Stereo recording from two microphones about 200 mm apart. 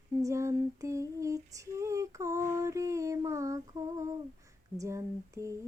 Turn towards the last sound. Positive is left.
turn(degrees=-15)  # may be behind; listen again after turning